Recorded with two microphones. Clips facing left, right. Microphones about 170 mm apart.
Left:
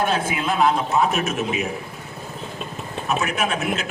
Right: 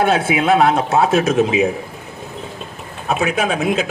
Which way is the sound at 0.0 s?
70° right (ahead or behind).